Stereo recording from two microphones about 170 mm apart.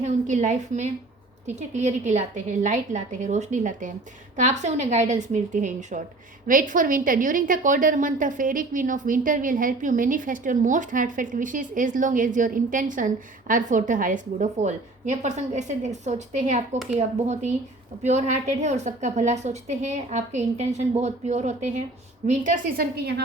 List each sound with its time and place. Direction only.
0.0 s a woman's voice: 45° right (ahead or behind); by 23.2 s 65° right (ahead or behind)